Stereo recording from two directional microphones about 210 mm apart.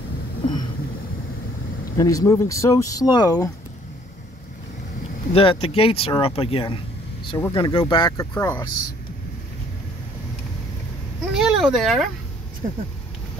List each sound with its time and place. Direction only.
2.0 s speech: 15° left (ahead or behind)
5.3 s speech: 25° left (ahead or behind)
8.6 s speech: 60° right (ahead or behind)
11.3 s speech: centre (ahead or behind)